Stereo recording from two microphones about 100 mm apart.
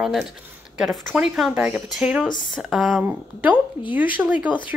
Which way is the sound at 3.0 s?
15° right (ahead or behind).